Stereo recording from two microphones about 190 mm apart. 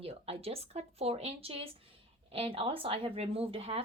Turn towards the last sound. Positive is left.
turn(degrees=-30)  # may be behind; listen again after turning